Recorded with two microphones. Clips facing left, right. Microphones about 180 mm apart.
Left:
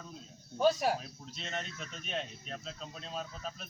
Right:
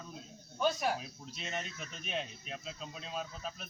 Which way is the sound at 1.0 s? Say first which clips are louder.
Even; 5° right (ahead or behind).